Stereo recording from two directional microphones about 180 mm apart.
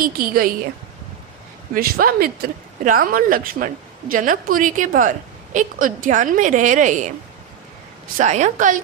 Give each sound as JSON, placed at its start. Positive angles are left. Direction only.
{"t": 0.0, "sound": "a woman's voice", "side_deg": -55}
{"t": 1.7, "sound": "a woman's voice", "side_deg": -55}
{"t": 8.2, "sound": "a woman's voice", "side_deg": -40}